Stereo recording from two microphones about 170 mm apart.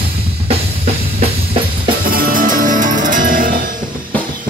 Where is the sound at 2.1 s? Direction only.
55° right (ahead or behind).